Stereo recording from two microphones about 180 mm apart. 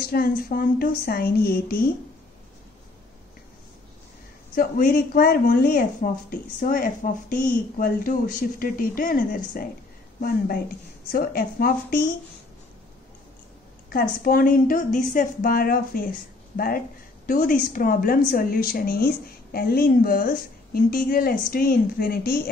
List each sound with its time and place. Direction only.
0.0 s a woman's voice: 55° left (ahead or behind)
4.6 s speech: 50° left (ahead or behind)
11.1 s speech: 55° left (ahead or behind)
13.8 s a woman's voice: 55° left (ahead or behind)